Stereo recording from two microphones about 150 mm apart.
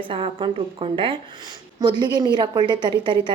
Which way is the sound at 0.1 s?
35° right (ahead or behind).